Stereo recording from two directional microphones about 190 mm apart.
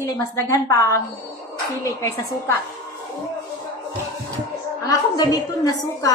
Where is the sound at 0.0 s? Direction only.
20° left (ahead or behind).